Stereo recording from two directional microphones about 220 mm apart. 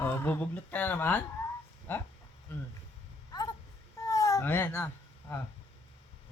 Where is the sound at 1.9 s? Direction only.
10° left (ahead or behind).